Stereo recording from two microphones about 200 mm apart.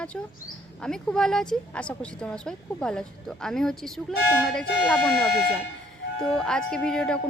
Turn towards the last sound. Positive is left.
turn(degrees=5)  # may be behind; listen again after turning